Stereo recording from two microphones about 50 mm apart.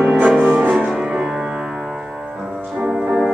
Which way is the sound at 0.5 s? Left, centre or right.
Right.